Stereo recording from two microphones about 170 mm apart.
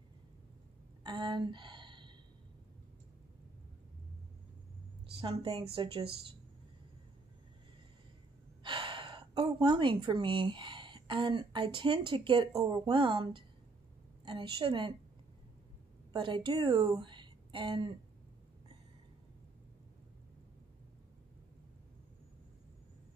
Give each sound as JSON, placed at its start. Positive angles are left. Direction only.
{"t": 1.0, "sound": "a sound", "side_deg": -25}
{"t": 5.1, "sound": "speech", "side_deg": -30}
{"t": 8.6, "sound": "a woman's voice", "side_deg": -30}
{"t": 16.1, "sound": "a woman's voice", "side_deg": -30}